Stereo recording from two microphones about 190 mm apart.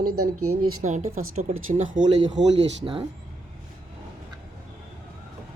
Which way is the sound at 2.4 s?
65° right (ahead or behind).